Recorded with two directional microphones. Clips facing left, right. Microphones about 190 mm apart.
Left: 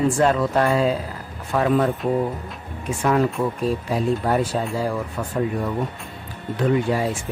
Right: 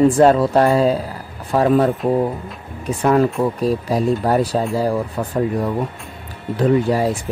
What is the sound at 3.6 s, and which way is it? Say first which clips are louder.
Speech: right 4 dB; 40° right (ahead or behind).